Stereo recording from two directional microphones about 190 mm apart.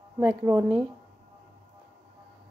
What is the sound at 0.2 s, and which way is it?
Speech, 15° right (ahead or behind).